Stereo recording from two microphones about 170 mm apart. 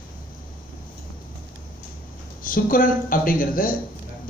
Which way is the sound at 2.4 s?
55° left (ahead or behind).